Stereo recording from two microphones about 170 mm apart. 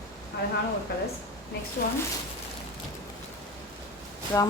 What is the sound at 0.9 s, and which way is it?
Speech, 70° left (ahead or behind).